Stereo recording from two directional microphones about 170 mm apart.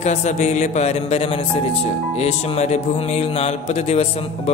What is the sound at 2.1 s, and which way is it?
Music, 35° left (ahead or behind).